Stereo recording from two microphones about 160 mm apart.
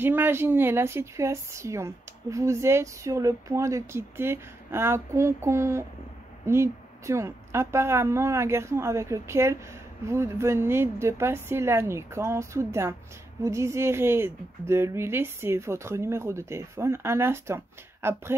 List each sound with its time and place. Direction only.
0.0 s a woman's voice: 15° right (ahead or behind)